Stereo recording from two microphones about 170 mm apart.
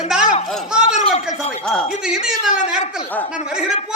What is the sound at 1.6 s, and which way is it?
Speech, 5° left (ahead or behind).